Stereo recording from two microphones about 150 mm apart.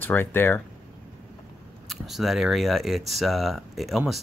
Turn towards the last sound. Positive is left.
turn(degrees=0)  # may be behind; listen again after turning